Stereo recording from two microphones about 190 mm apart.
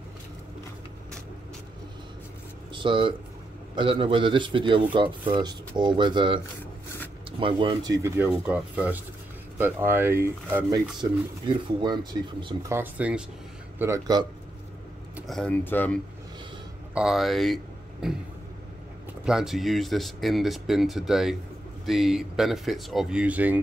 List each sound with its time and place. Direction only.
2.7 s speech: 25° right (ahead or behind)
12.7 s speech: 10° right (ahead or behind)
15.1 s speech: centre (ahead or behind)
16.9 s speech: 5° right (ahead or behind)
19.2 s speech: centre (ahead or behind)